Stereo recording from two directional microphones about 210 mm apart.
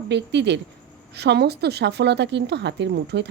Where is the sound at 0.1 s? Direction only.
55° right (ahead or behind).